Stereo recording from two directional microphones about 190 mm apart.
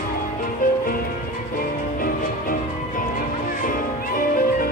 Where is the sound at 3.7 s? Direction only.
45° left (ahead or behind).